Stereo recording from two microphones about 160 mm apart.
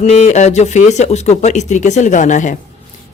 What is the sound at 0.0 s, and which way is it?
Speech, 45° left (ahead or behind).